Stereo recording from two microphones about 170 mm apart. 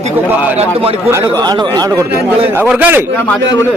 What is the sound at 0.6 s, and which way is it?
Speech, 35° right (ahead or behind).